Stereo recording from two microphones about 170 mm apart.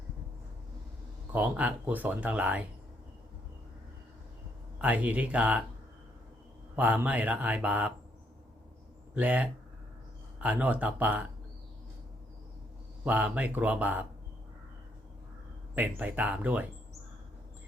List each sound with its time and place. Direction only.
1.3 s speech: 10° right (ahead or behind)
4.8 s speech: 10° right (ahead or behind)
6.7 s speech: 10° right (ahead or behind)
9.1 s speech: 10° right (ahead or behind)
13.1 s speech: 10° right (ahead or behind)
15.7 s speech: 10° right (ahead or behind)